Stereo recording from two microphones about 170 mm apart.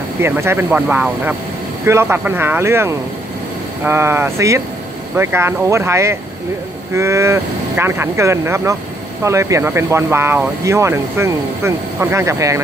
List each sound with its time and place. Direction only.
0.2 s speech: 15° right (ahead or behind)